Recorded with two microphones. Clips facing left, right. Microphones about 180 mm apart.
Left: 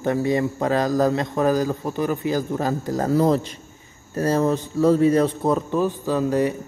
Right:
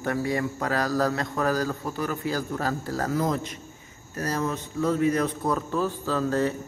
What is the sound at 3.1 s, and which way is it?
A man's voice, 30° left (ahead or behind).